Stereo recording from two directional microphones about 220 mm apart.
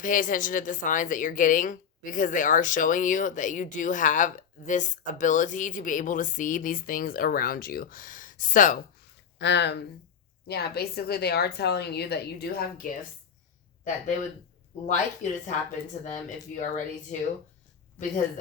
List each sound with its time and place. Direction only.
0.0 s a woman's voice: 35° left (ahead or behind)
9.4 s a woman's voice: 50° left (ahead or behind)
14.8 s a woman's voice: 35° left (ahead or behind)
16.6 s a woman's voice: 35° left (ahead or behind)